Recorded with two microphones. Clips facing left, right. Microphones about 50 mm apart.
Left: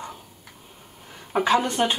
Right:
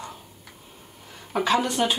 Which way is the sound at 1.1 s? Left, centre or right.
Centre.